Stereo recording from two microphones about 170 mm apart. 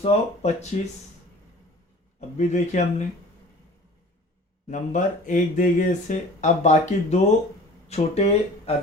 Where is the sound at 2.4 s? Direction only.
45° left (ahead or behind).